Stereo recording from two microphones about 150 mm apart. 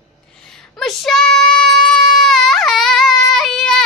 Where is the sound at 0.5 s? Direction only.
Centre (ahead or behind).